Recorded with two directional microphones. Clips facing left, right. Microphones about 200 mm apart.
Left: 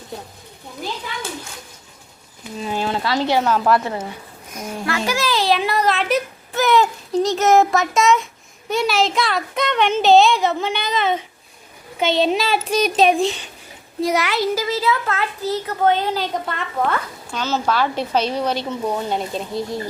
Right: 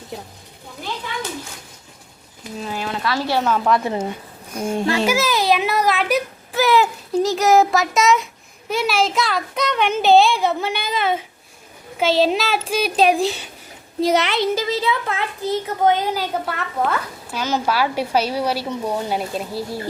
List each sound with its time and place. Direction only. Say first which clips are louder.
2.7 s speech: left 3 dB; 25° left (ahead or behind)
3.4 s a woman's voice: left 1 dB; centre (ahead or behind)
4.5 s a child's voice: right 5 dB; 30° right (ahead or behind)
5.0 s a child's voice: left 2 dB; 10° right (ahead or behind)
14.0 s a child's voice: right 2 dB; 25° right (ahead or behind); by 19.8 s 5° right (ahead or behind)